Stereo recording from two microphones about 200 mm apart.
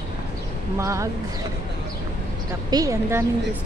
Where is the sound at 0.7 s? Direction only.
15° right (ahead or behind).